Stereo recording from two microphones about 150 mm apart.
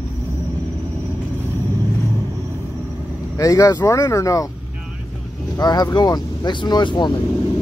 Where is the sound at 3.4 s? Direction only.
20° left (ahead or behind).